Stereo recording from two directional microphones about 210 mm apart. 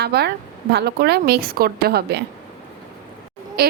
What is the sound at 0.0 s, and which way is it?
A woman's voice, 50° right (ahead or behind).